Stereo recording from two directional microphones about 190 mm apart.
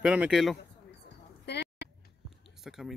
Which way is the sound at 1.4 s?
60° left (ahead or behind).